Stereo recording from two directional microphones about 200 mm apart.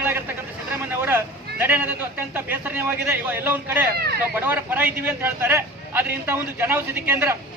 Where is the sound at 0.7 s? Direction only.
10° right (ahead or behind).